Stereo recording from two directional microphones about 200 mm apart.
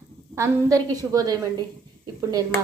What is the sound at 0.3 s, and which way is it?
Speech, 15° right (ahead or behind).